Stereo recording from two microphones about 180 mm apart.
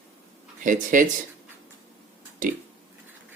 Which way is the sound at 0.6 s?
45° right (ahead or behind).